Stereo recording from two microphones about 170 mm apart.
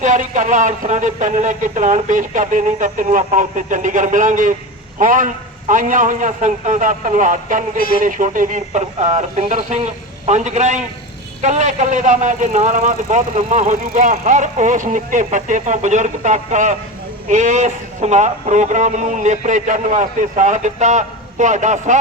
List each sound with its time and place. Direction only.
0.0 s a man's voice: 45° right (ahead or behind)